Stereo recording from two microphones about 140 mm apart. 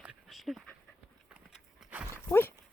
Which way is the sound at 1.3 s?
5° right (ahead or behind).